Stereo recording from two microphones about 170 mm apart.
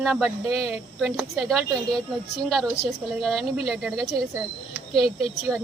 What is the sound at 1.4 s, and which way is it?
Speech, centre (ahead or behind).